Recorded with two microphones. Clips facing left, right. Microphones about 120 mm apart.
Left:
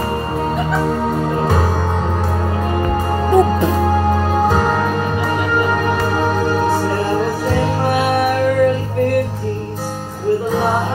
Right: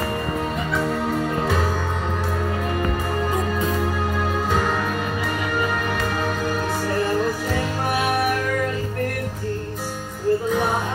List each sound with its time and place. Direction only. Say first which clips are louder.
3.3 s music: left 14 dB; 70° left (ahead or behind)
3.7 s music: left 8 dB; 40° left (ahead or behind)
10.5 s music: left 5 dB; 30° left (ahead or behind)